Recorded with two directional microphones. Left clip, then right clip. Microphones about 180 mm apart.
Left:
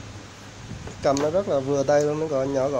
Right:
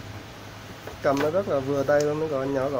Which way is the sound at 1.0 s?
10° left (ahead or behind).